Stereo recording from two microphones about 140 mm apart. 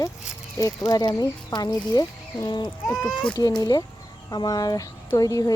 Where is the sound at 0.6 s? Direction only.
25° left (ahead or behind).